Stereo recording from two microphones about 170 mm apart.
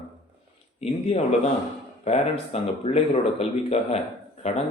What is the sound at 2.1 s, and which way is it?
Speech, 40° left (ahead or behind).